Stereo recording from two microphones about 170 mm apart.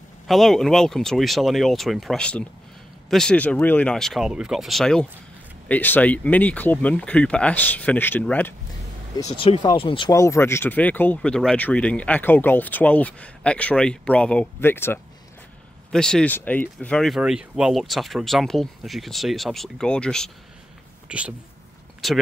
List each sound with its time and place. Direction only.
0.3 s speech: centre (ahead or behind)
9.3 s speech: 35° left (ahead or behind)
10.1 s speech: 15° left (ahead or behind)
21.1 s speech: 5° right (ahead or behind)